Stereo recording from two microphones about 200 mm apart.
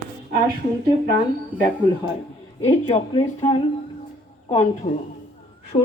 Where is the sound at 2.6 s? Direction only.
30° left (ahead or behind).